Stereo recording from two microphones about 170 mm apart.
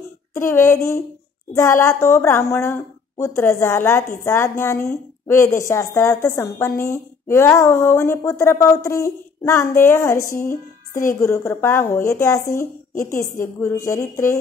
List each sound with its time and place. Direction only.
0.3 s a woman's voice: 15° left (ahead or behind)